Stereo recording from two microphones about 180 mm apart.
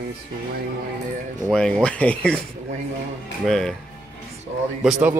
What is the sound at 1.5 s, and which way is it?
Speech, 5° left (ahead or behind).